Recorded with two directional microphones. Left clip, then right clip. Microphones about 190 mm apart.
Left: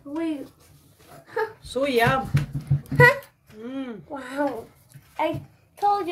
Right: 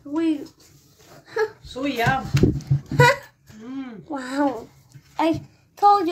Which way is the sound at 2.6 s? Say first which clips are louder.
Left 4 dB; 30° right (ahead or behind).